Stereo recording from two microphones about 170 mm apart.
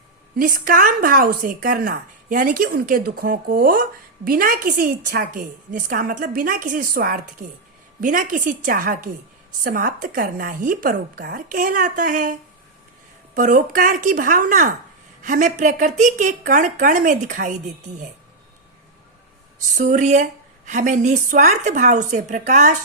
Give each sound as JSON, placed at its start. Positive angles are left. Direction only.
{"t": 0.3, "sound": "a woman's voice", "side_deg": -55}
{"t": 19.7, "sound": "a woman's voice", "side_deg": -45}